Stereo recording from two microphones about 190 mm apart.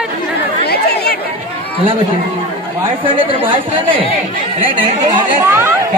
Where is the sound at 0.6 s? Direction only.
55° left (ahead or behind).